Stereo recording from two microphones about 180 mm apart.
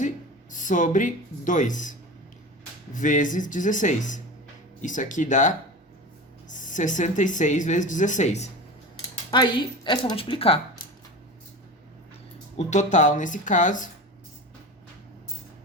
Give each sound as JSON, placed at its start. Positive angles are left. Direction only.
{"t": 0.5, "sound": "speech", "side_deg": 45}
{"t": 9.3, "sound": "a woman's voice", "side_deg": 25}
{"t": 12.5, "sound": "speech", "side_deg": 40}